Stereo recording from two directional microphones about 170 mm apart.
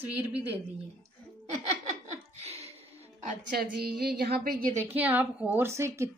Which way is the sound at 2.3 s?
35° right (ahead or behind).